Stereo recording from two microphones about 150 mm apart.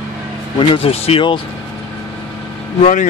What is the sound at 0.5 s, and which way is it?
Speech, 40° left (ahead or behind).